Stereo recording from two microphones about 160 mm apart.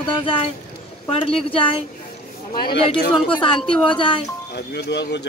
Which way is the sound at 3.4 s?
30° left (ahead or behind).